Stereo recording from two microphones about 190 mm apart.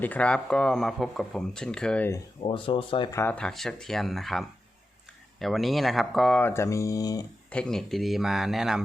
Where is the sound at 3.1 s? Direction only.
10° left (ahead or behind).